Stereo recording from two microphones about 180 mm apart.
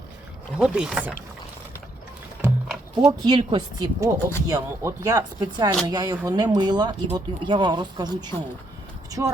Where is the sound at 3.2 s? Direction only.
25° right (ahead or behind).